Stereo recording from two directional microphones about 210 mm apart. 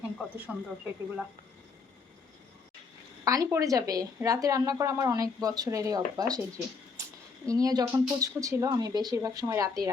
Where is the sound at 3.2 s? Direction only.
15° right (ahead or behind).